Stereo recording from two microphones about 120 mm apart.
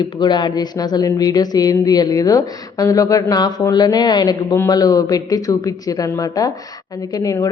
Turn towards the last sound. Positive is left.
turn(degrees=30)  # may be behind; listen again after turning